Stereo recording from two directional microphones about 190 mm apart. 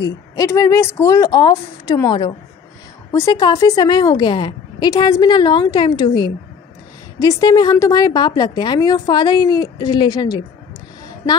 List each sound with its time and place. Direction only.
0.0 s a woman's voice: 20° left (ahead or behind)